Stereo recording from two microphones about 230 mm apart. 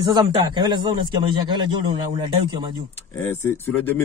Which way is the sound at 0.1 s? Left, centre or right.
Centre.